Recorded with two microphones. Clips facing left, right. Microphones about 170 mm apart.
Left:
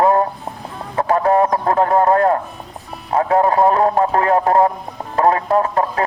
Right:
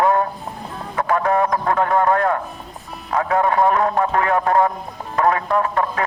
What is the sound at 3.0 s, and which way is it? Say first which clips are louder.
Music: left 3 dB; 30° left (ahead or behind).